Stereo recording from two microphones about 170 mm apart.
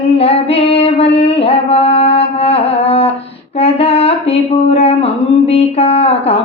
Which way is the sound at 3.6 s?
35° left (ahead or behind).